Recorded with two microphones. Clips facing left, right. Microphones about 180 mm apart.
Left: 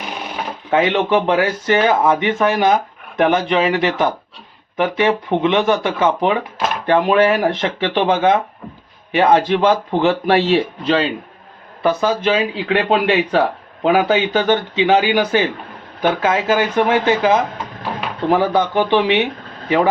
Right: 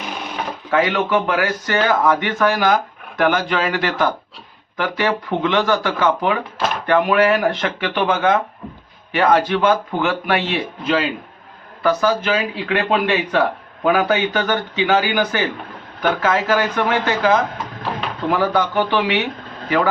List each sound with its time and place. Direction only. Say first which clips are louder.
0.7 s speech: left 2 dB; 25° left (ahead or behind)